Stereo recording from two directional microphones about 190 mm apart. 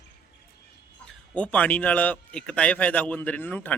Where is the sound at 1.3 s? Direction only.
5° left (ahead or behind).